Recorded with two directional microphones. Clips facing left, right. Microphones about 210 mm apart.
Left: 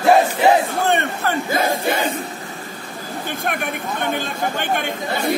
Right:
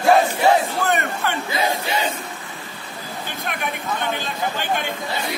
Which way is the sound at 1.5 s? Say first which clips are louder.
Left 4 dB; 50° left (ahead or behind).